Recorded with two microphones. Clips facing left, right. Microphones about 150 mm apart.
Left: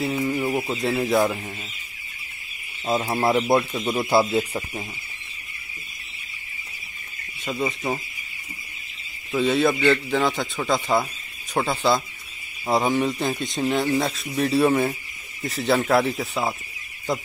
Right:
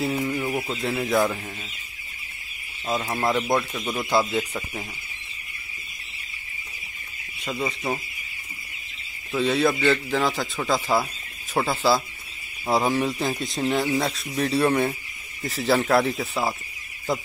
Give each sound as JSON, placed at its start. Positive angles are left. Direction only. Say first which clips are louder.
{"t": 0.0, "sound": "a sound", "louder": "left 2 dB", "side_deg": 5}
{"t": 0.7, "sound": "speech", "louder": "left 1 dB", "side_deg": 0}
{"t": 2.9, "sound": "speech", "louder": "left 3 dB", "side_deg": 15}
{"t": 7.3, "sound": "speech", "louder": "left 2 dB", "side_deg": 0}
{"t": 9.3, "sound": "speech", "louder": "left 1 dB", "side_deg": 0}